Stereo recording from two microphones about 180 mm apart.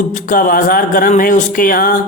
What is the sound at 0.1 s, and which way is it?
A man's voice, 50° left (ahead or behind).